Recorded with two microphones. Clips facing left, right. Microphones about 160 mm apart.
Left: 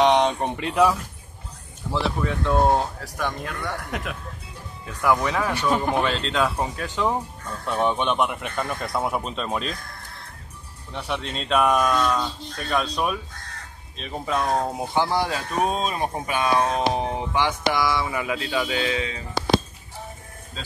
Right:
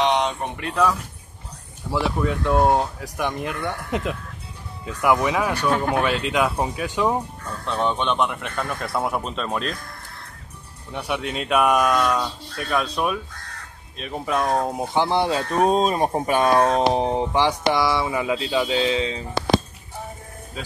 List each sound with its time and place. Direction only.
0.1 s speech: 25° left (ahead or behind)
1.9 s speech: 10° right (ahead or behind)
5.6 s speech: 5° left (ahead or behind)
6.0 s speech: 10° right (ahead or behind)
7.6 s speech: 10° left (ahead or behind)
10.9 s speech: 10° right (ahead or behind)
15.0 s speech: 25° right (ahead or behind)